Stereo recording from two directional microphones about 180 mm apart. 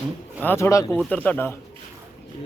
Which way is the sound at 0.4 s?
15° left (ahead or behind).